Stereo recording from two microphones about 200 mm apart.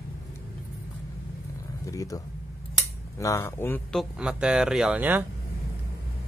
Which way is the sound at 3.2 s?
15° left (ahead or behind).